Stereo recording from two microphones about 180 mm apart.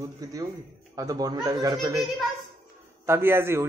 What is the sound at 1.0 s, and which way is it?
Speech, 20° right (ahead or behind).